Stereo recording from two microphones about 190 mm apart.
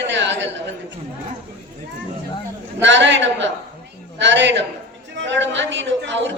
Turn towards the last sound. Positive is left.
turn(degrees=-70)  # may be behind; listen again after turning